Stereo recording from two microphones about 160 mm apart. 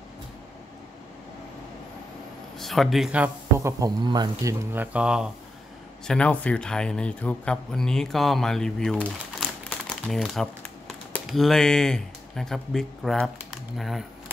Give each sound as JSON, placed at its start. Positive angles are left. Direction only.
{"t": 2.6, "sound": "speech", "side_deg": 0}
{"t": 4.7, "sound": "speech", "side_deg": -5}
{"t": 6.0, "sound": "speech", "side_deg": 5}
{"t": 10.0, "sound": "speech", "side_deg": 0}